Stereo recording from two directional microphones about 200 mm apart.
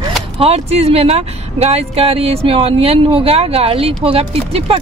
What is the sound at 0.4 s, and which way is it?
Speech, 30° right (ahead or behind).